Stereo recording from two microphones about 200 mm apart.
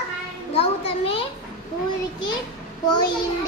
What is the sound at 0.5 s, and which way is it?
Children playing, 30° left (ahead or behind).